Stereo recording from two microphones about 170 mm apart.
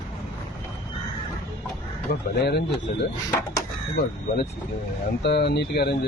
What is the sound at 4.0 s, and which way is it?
Speech, 70° left (ahead or behind).